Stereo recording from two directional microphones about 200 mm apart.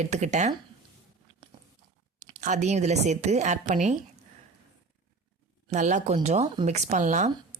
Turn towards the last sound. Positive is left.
turn(degrees=-35)  # may be behind; listen again after turning